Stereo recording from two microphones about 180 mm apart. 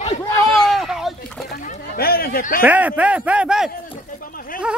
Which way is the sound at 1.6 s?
50° left (ahead or behind).